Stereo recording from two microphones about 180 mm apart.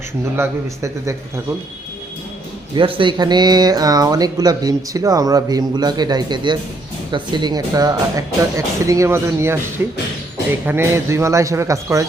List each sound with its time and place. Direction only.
0.3 s speech: 15° right (ahead or behind)
2.7 s speech: 30° right (ahead or behind)